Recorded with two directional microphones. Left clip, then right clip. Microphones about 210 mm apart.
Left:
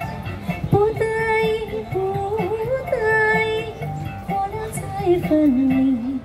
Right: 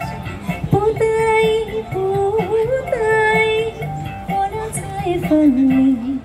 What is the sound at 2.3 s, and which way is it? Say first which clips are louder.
Music: right 5 dB; 10° right (ahead or behind).